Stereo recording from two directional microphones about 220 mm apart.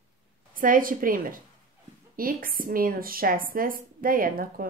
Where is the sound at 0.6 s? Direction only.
40° right (ahead or behind).